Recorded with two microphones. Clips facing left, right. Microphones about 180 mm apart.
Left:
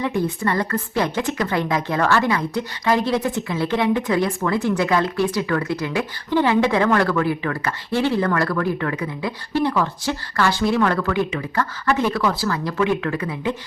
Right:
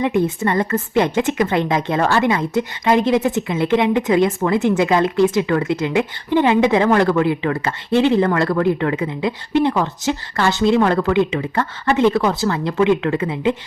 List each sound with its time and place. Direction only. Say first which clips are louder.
0.0 s a woman's voice: right 4 dB; 20° right (ahead or behind)